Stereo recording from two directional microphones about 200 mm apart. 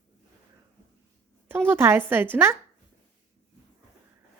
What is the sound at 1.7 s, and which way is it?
Speech, 10° right (ahead or behind).